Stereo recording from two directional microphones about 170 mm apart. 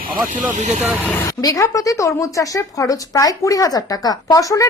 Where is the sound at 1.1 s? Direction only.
20° left (ahead or behind).